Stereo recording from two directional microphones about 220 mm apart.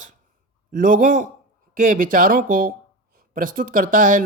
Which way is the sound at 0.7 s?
40° right (ahead or behind).